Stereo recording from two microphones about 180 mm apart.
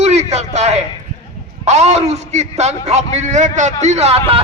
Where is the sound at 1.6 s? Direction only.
40° right (ahead or behind).